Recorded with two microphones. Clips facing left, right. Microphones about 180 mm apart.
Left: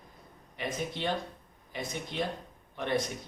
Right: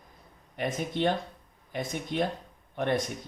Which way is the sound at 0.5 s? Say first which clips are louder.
Right 5 dB; 50° right (ahead or behind).